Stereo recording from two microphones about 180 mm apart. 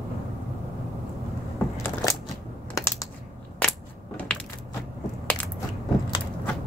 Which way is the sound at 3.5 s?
5° left (ahead or behind).